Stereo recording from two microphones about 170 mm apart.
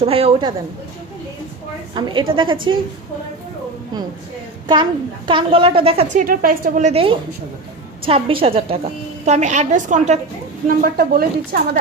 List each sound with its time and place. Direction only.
0.0 s a woman's voice: 35° right (ahead or behind)
2.0 s a woman's voice: 25° right (ahead or behind)
5.3 s a woman's voice: 30° right (ahead or behind)
6.1 s a woman's voice: 55° right (ahead or behind)
10.7 s speech: 60° right (ahead or behind)